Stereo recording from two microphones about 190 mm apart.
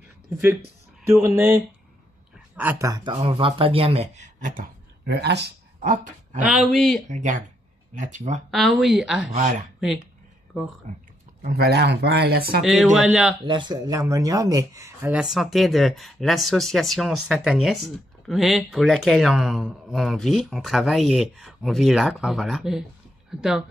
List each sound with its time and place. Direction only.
1.0 s speech: 15° right (ahead or behind); by 4.6 s 40° right (ahead or behind)
5.0 s speech: 60° right (ahead or behind)
6.4 s speech: 5° right (ahead or behind)
7.1 s speech: 40° right (ahead or behind)
8.5 s speech: centre (ahead or behind)
10.9 s speech: 40° right (ahead or behind)
11.4 s speech: 55° right (ahead or behind)
12.6 s speech: centre (ahead or behind)
13.5 s speech: 25° right (ahead or behind); by 23.6 s 5° right (ahead or behind)